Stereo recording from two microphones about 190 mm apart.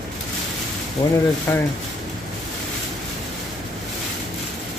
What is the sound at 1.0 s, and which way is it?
Speech, 20° left (ahead or behind).